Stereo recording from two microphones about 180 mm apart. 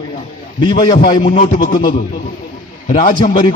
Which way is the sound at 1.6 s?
25° left (ahead or behind).